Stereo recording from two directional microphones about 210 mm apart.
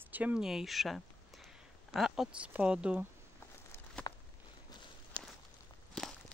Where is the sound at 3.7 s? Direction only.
10° left (ahead or behind).